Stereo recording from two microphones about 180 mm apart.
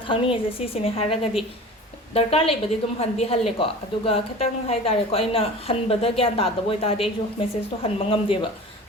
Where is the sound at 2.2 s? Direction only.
30° left (ahead or behind).